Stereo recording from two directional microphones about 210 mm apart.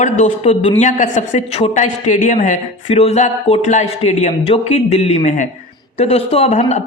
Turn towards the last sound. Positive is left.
turn(degrees=30)  # may be behind; listen again after turning